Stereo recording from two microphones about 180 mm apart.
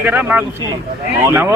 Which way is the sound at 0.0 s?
10° right (ahead or behind).